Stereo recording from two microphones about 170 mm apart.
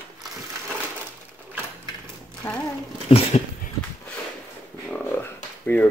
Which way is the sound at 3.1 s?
35° left (ahead or behind).